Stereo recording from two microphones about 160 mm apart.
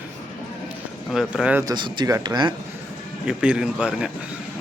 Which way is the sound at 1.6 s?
30° right (ahead or behind).